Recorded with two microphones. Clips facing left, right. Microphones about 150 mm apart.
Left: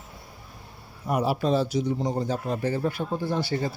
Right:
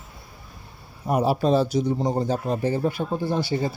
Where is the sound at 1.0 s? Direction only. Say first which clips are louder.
Right 3 dB; 30° right (ahead or behind).